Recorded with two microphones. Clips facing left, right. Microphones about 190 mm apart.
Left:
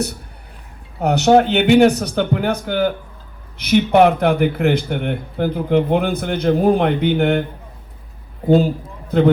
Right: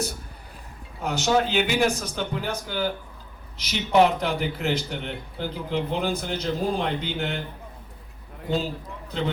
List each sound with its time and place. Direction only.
1.0 s speech: 65° left (ahead or behind)
8.4 s a man's voice: 50° left (ahead or behind)